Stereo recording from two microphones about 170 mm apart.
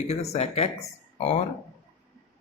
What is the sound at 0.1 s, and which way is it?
Speech, 40° left (ahead or behind).